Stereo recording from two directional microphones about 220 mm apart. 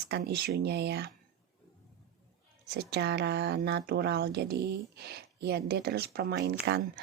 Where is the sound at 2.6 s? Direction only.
50° right (ahead or behind).